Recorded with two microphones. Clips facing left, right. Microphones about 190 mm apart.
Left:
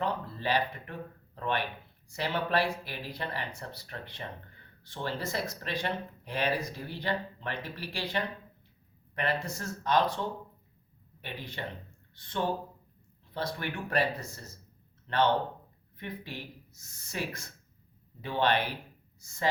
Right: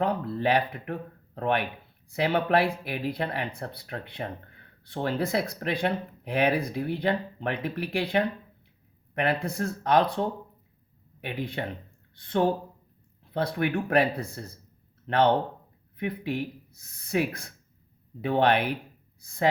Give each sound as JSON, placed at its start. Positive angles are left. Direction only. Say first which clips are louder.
{"t": 0.0, "sound": "speech", "louder": "right 7 dB", "side_deg": -55}